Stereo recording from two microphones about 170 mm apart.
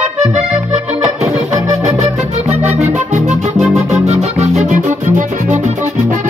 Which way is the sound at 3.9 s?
40° right (ahead or behind).